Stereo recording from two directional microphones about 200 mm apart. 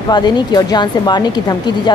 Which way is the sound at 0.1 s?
20° left (ahead or behind).